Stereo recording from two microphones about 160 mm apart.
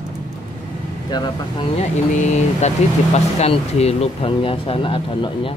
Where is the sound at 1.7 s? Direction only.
45° left (ahead or behind).